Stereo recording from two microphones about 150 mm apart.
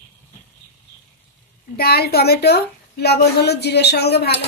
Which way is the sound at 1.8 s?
90° left.